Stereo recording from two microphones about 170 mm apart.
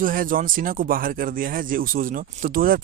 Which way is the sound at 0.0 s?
55° right (ahead or behind).